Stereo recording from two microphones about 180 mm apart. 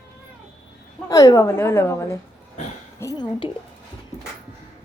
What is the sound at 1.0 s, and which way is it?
A woman's voice, 20° left (ahead or behind).